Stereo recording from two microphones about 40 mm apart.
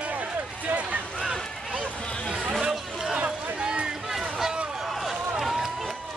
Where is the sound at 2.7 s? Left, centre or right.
Centre.